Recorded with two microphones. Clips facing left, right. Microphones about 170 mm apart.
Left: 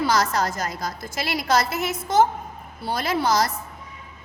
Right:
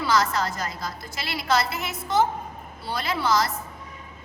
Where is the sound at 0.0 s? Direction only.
40° left (ahead or behind).